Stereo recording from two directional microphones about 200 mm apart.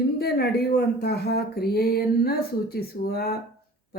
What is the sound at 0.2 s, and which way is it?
Speech, 55° left (ahead or behind).